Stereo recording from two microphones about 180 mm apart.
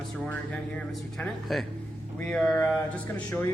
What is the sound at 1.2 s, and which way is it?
A man's voice, centre (ahead or behind).